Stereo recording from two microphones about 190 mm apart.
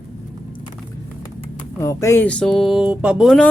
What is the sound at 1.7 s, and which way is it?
Speech, 15° left (ahead or behind).